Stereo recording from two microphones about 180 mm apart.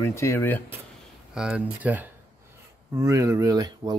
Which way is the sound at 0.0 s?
15° left (ahead or behind).